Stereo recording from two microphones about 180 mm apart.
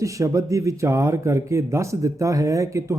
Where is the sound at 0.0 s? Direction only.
15° right (ahead or behind).